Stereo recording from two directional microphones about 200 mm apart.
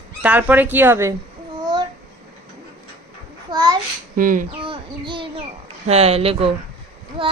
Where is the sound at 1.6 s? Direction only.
20° right (ahead or behind).